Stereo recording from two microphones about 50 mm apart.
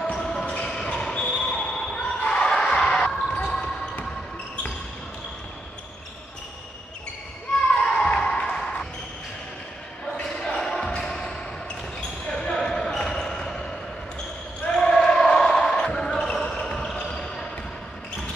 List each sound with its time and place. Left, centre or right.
0.0 s basketball bounce: centre
7.8 s a sound: centre
10.2 s basketball bounce: centre
11.0 s music: centre
12.3 s basketball bounce: centre
13.4 s a sound: centre
14.8 s basketball bounce: centre